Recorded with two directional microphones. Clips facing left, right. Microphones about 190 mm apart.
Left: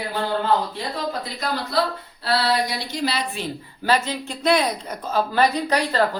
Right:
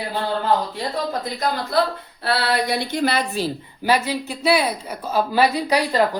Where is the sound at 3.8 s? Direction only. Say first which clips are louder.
Right 2 dB; 10° right (ahead or behind).